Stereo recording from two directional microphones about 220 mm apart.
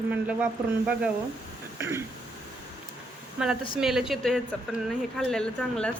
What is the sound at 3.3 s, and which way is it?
Speech, 5° right (ahead or behind).